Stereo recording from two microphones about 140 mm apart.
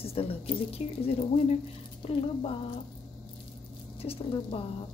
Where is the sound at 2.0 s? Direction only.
45° left (ahead or behind).